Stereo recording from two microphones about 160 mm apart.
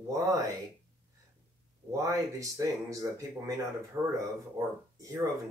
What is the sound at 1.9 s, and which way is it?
Speech, 20° right (ahead or behind).